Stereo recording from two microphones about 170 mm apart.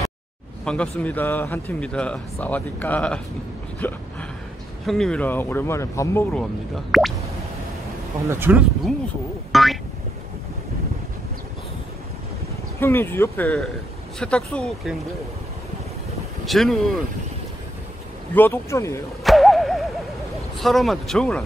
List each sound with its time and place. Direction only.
0.7 s speech: 5° left (ahead or behind)
6.9 s speech: centre (ahead or behind)
8.3 s speech: 10° right (ahead or behind)
9.5 s boing: centre (ahead or behind)
12.8 s speech: 15° left (ahead or behind)
16.4 s speech: centre (ahead or behind)
18.3 s speech: 15° left (ahead or behind)
19.2 s a sound: centre (ahead or behind)
20.5 s speech: centre (ahead or behind)